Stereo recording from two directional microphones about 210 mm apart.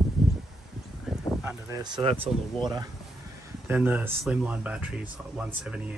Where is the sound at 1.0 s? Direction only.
10° right (ahead or behind).